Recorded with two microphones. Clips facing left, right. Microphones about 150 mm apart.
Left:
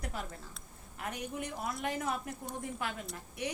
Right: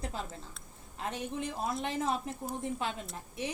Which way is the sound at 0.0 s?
25° right (ahead or behind).